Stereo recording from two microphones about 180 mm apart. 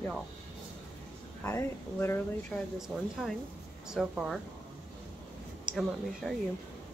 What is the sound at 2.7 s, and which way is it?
A woman's voice, centre (ahead or behind).